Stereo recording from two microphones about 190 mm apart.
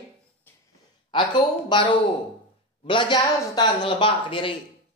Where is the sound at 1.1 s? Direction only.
25° left (ahead or behind).